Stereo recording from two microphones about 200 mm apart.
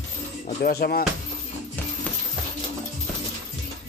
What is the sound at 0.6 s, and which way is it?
Speech, 50° left (ahead or behind).